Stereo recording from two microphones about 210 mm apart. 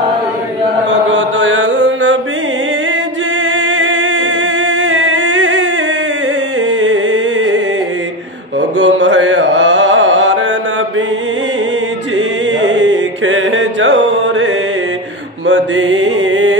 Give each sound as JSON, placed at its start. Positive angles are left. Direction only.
{"t": 1.1, "sound": "mantra", "side_deg": -60}
{"t": 3.5, "sound": "music", "side_deg": -60}
{"t": 6.8, "sound": "music", "side_deg": -60}
{"t": 8.5, "sound": "mantra", "side_deg": -60}
{"t": 12.6, "sound": "mantra", "side_deg": -60}
{"t": 15.4, "sound": "music", "side_deg": -60}